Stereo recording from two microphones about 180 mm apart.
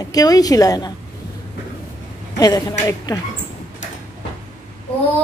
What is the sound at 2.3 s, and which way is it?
Speech, 20° left (ahead or behind).